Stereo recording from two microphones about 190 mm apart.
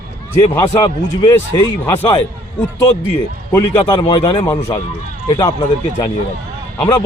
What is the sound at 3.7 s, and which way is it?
Speech, 25° left (ahead or behind).